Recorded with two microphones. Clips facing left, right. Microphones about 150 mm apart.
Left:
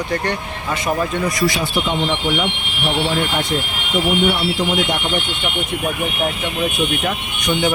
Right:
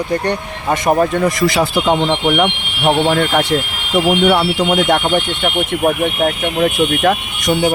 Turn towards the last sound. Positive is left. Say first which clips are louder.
# right 7 dB
turn(degrees=-65)  # may be behind; listen again after turning